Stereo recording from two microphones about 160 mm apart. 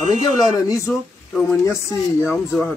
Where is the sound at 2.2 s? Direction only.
5° right (ahead or behind).